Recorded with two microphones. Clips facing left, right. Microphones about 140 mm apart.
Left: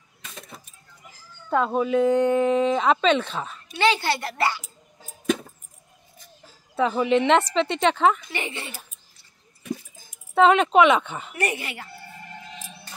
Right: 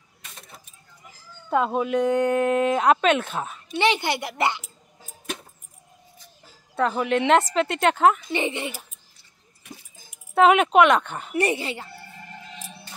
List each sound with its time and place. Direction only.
1.5 s speech: 5° right (ahead or behind)
3.7 s a child's voice: 20° right (ahead or behind)
6.8 s speech: centre (ahead or behind)
8.3 s a child's voice: 20° right (ahead or behind)
10.3 s speech: 5° right (ahead or behind)
11.3 s a child's voice: 30° right (ahead or behind)